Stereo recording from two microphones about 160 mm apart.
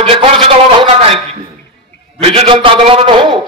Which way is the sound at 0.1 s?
35° right (ahead or behind).